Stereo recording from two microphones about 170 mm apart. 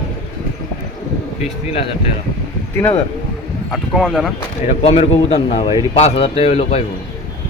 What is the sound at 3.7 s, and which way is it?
Speech, centre (ahead or behind).